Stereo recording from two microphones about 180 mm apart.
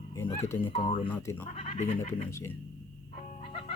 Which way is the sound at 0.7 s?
35° left (ahead or behind).